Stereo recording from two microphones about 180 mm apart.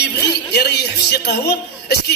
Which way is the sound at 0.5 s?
65° left (ahead or behind).